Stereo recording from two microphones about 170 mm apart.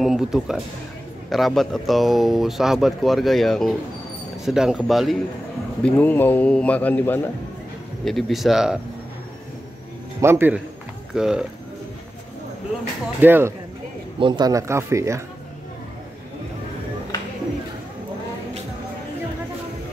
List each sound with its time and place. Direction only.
0.0 s a man's voice: centre (ahead or behind)
10.2 s a man's voice: 15° right (ahead or behind)
13.2 s speech: 10° right (ahead or behind)
14.2 s speech: 25° right (ahead or behind)